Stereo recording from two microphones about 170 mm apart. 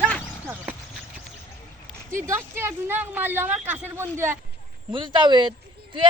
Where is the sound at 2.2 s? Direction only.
15° right (ahead or behind).